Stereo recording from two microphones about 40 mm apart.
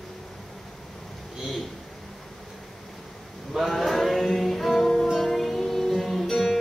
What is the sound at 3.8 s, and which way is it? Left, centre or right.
Music, centre.